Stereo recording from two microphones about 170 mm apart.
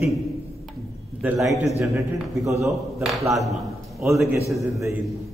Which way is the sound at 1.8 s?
15° right (ahead or behind).